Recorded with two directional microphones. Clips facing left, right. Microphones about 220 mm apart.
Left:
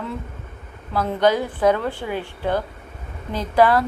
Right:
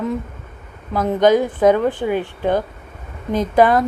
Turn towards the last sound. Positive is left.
turn(degrees=-20)  # may be behind; listen again after turning